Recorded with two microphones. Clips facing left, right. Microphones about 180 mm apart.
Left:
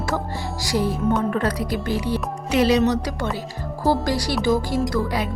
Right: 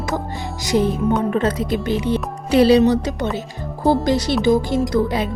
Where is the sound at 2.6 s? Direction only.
30° right (ahead or behind).